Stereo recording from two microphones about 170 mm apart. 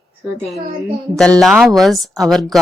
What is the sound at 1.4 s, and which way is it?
A woman's voice, centre (ahead or behind).